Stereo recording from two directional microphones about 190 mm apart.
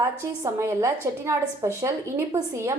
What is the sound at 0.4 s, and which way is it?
A woman's voice, 15° right (ahead or behind).